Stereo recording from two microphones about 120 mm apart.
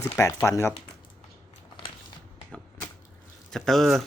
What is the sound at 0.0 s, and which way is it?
Speech, 25° left (ahead or behind).